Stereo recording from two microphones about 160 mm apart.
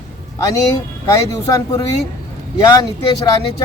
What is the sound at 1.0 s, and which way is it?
Speech, 20° left (ahead or behind).